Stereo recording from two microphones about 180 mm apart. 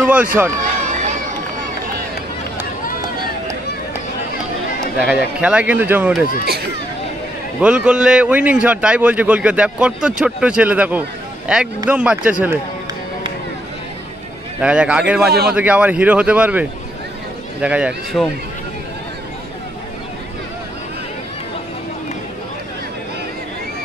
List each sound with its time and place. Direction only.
0.0 s a man's voice: 10° right (ahead or behind)
5.0 s a man's voice: 5° right (ahead or behind)
7.6 s a man's voice: 5° right (ahead or behind)
14.6 s a man's voice: 5° right (ahead or behind)